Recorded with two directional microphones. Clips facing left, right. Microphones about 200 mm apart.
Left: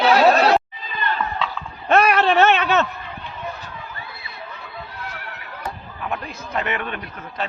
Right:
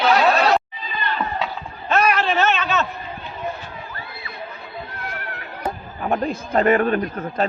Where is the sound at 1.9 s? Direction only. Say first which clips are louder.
Left 3 dB; 60° left (ahead or behind).